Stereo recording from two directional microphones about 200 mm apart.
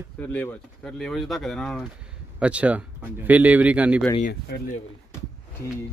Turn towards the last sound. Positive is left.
turn(degrees=55)  # may be behind; listen again after turning